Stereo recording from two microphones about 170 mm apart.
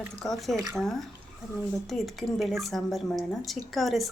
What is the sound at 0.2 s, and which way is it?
Speech, centre (ahead or behind).